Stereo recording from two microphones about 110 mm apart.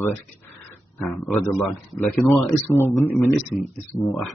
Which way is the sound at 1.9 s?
15° left (ahead or behind).